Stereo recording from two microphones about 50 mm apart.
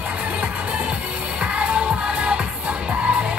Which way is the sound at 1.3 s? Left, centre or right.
Right.